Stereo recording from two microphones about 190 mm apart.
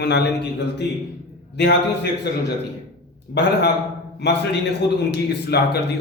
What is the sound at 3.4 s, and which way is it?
A man's voice, 65° left (ahead or behind).